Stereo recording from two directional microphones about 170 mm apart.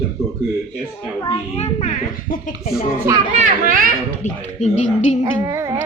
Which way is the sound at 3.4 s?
50° right (ahead or behind).